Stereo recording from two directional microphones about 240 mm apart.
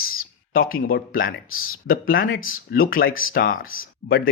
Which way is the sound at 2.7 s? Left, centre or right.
Left.